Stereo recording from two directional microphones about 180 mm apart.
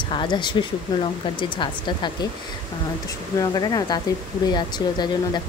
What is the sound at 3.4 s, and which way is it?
Speech, 20° left (ahead or behind).